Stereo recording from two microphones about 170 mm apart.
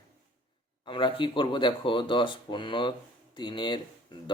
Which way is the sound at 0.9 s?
30° left (ahead or behind).